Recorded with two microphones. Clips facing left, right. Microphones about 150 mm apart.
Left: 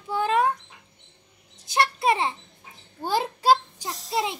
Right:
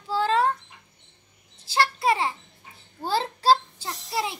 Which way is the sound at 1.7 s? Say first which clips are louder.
Even; 20° left (ahead or behind).